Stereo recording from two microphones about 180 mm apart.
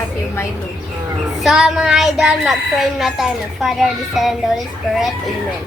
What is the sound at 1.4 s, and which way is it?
A woman's voice, centre (ahead or behind).